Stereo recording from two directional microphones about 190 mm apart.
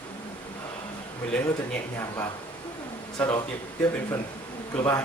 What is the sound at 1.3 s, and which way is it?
A man's voice, 10° left (ahead or behind).